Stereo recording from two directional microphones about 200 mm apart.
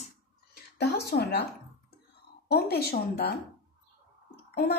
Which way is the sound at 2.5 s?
50° left (ahead or behind).